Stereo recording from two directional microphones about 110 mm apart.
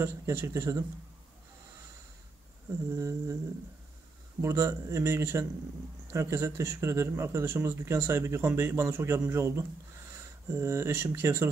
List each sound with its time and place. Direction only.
0.0 s speech: 20° right (ahead or behind)
2.9 s speech: 25° right (ahead or behind)
4.4 s speech: 25° right (ahead or behind)